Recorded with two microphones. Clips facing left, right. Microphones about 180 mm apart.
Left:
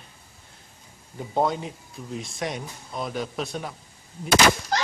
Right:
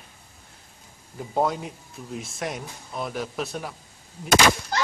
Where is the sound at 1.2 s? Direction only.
5° right (ahead or behind).